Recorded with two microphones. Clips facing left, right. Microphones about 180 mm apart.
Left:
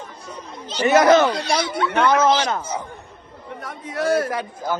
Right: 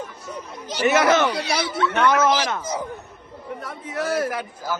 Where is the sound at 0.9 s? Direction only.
30° left (ahead or behind).